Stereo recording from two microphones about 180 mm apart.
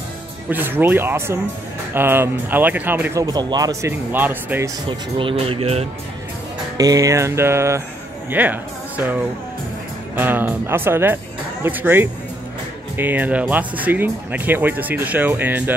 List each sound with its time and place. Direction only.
0.5 s speech: 10° right (ahead or behind)
3.9 s speech: 10° right (ahead or behind)
4.8 s speech: 30° right (ahead or behind)
6.8 s speech: 20° right (ahead or behind)